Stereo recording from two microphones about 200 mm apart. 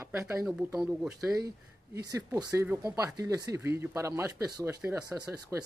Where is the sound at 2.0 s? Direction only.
20° right (ahead or behind).